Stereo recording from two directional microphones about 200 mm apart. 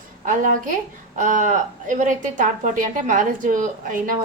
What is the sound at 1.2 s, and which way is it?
A woman's voice, 40° right (ahead or behind).